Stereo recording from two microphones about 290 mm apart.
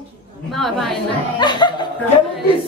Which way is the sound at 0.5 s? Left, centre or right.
Centre.